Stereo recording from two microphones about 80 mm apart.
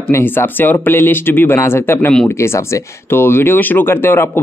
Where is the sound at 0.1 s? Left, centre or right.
Left.